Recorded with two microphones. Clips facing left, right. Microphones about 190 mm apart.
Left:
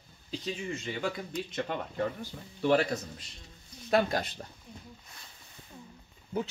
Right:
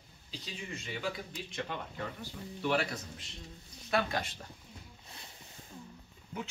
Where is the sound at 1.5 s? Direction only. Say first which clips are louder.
Left 5 dB; 45° left (ahead or behind).